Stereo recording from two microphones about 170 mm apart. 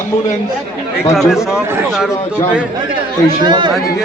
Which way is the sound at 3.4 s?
25° right (ahead or behind).